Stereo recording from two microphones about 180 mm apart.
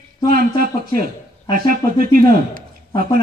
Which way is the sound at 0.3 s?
55° right (ahead or behind).